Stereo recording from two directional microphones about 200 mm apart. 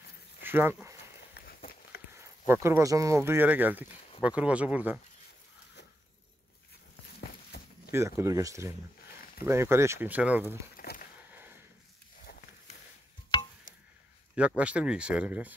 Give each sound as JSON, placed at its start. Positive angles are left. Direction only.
{"t": 0.4, "sound": "speech", "side_deg": -10}
{"t": 1.3, "sound": "walk", "side_deg": 50}
{"t": 2.1, "sound": "speech", "side_deg": -10}
{"t": 7.5, "sound": "a sound", "side_deg": 55}
{"t": 7.9, "sound": "speech", "side_deg": -15}
{"t": 10.8, "sound": "a sound", "side_deg": 45}
{"t": 14.3, "sound": "speech", "side_deg": -5}